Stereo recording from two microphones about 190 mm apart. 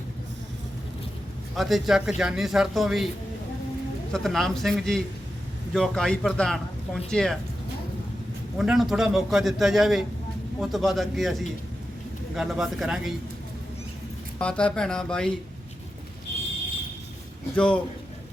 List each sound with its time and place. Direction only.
1.5 s a man's voice: centre (ahead or behind)
4.1 s a man's voice: centre (ahead or behind)
8.5 s a man's voice: 5° right (ahead or behind)
14.3 s a man's voice: 5° left (ahead or behind)
17.5 s a man's voice: 5° left (ahead or behind)